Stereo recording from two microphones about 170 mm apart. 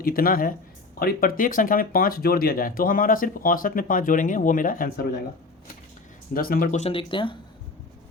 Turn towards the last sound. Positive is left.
turn(degrees=30)  # may be behind; listen again after turning